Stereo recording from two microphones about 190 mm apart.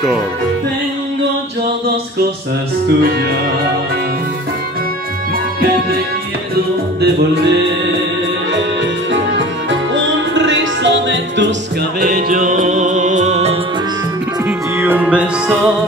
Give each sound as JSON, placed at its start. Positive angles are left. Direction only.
{"t": 9.1, "sound": "music", "side_deg": -75}
{"t": 12.0, "sound": "music", "side_deg": -50}
{"t": 14.8, "sound": "music", "side_deg": -10}